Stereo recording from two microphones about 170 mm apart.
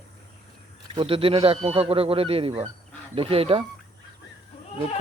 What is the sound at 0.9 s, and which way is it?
Speech, 35° right (ahead or behind).